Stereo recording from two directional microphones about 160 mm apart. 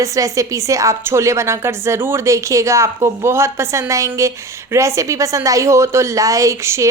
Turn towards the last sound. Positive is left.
turn(degrees=-15)  # may be behind; listen again after turning